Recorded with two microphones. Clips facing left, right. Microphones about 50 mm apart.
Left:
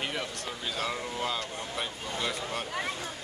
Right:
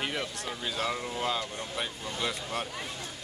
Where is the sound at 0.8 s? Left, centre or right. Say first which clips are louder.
Right 1 dB; centre.